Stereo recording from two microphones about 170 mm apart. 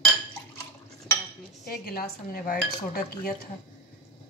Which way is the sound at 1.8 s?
60° left (ahead or behind).